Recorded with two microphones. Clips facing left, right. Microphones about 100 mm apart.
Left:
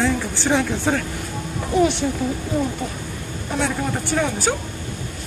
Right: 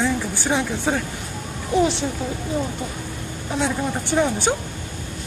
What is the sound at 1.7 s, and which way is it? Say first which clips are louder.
Speech: left 1 dB; 30° right (ahead or behind).